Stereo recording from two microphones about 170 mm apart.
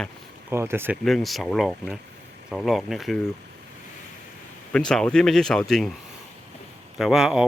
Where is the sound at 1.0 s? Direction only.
Centre (ahead or behind).